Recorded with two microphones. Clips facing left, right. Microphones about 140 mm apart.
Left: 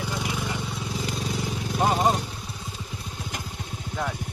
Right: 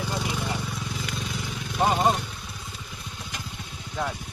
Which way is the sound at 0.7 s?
30° left (ahead or behind).